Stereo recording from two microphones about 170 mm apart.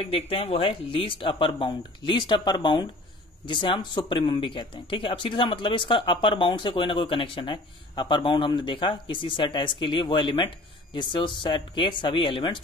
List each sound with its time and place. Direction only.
0.0 s speech: 35° left (ahead or behind)